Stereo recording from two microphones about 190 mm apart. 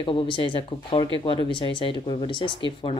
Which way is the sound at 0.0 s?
25° left (ahead or behind).